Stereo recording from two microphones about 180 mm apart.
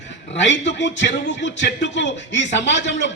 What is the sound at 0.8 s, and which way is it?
A man's voice, 85° left.